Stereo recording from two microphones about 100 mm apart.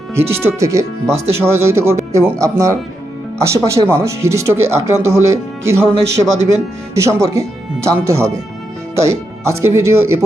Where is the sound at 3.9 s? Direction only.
30° right (ahead or behind).